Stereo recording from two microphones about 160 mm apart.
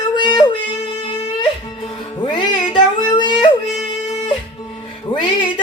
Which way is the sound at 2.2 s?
30° left (ahead or behind).